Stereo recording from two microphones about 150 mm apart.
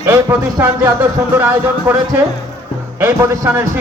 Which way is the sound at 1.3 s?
15° right (ahead or behind).